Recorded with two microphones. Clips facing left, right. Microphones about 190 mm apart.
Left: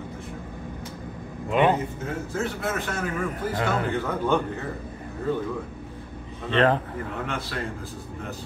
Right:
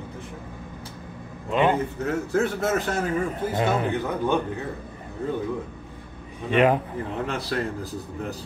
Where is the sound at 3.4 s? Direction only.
20° right (ahead or behind).